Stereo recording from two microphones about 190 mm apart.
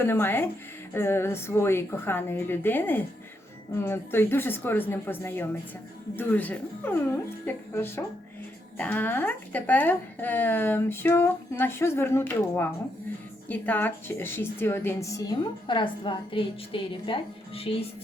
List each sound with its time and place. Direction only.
0.0 s a woman's voice: 10° left (ahead or behind); by 17.8 s 30° left (ahead or behind)